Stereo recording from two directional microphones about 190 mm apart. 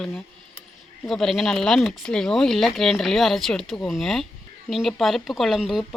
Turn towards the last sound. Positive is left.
turn(degrees=0)  # may be behind; listen again after turning